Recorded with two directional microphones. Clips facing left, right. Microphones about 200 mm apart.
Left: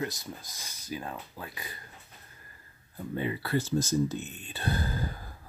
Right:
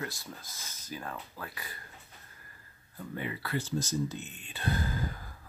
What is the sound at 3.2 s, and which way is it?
Speech, 25° left (ahead or behind).